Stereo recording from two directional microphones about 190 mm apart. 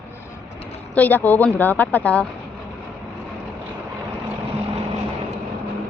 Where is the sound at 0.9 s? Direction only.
10° left (ahead or behind).